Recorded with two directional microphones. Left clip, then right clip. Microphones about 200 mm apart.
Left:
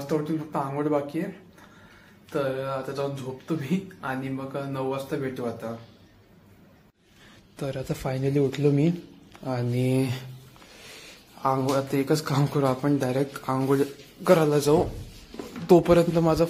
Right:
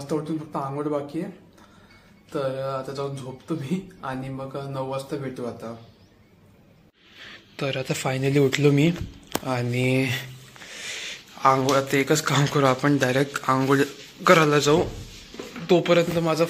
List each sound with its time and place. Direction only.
0.1 s speech: centre (ahead or behind)
2.3 s speech: 5° right (ahead or behind)
7.5 s speech: 5° left (ahead or behind)
11.4 s speech: centre (ahead or behind)
15.6 s a man's voice: 30° left (ahead or behind)